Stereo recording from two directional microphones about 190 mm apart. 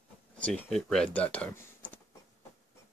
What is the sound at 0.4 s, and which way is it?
Speech, centre (ahead or behind).